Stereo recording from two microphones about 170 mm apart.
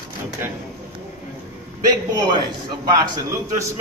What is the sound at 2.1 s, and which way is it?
A man's voice, 25° right (ahead or behind).